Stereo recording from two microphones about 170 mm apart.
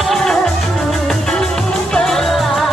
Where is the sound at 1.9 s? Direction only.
Centre (ahead or behind).